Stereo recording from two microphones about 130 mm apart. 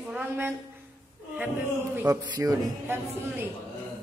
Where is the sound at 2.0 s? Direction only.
25° right (ahead or behind).